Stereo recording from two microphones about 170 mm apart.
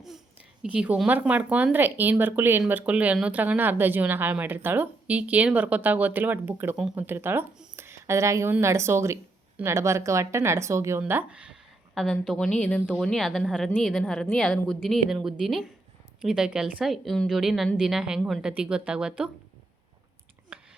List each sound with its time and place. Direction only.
0.6 s a woman's voice: 5° right (ahead or behind)
20.5 s whispering: 5° right (ahead or behind)